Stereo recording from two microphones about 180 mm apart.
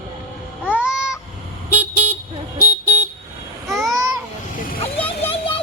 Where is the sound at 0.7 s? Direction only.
5° right (ahead or behind).